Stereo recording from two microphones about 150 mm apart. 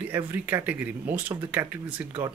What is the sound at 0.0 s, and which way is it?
Speech, 15° right (ahead or behind).